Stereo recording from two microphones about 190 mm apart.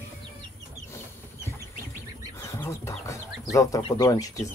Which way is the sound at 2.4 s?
15° left (ahead or behind).